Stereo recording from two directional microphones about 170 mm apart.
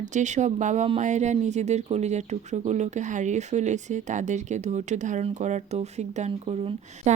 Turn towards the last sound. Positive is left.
turn(degrees=-35)  # may be behind; listen again after turning